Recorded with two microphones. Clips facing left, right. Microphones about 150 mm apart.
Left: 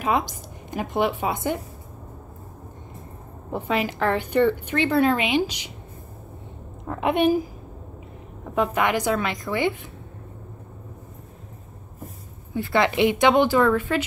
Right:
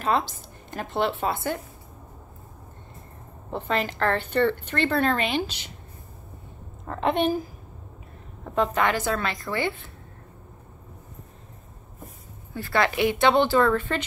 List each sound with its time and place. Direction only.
0.0 s a woman's voice: 15° left (ahead or behind)
3.5 s a woman's voice: 10° left (ahead or behind)
6.8 s a woman's voice: 10° left (ahead or behind)
8.5 s a woman's voice: 10° left (ahead or behind)
12.5 s a woman's voice: 20° left (ahead or behind)